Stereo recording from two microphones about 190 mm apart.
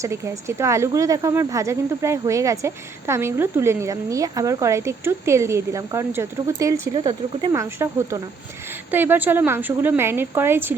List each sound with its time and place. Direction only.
0.0 s speech: 15° right (ahead or behind)